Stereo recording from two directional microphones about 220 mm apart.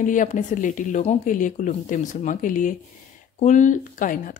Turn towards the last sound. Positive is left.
turn(degrees=35)  # may be behind; listen again after turning